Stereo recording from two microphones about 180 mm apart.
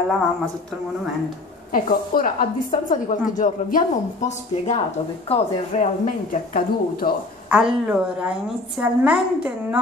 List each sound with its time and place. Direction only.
1.7 s a woman's voice: 50° left (ahead or behind)
7.4 s a woman's voice: 5° right (ahead or behind)